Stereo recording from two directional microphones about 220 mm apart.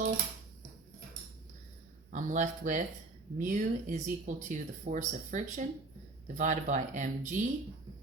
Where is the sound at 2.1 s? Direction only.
35° right (ahead or behind).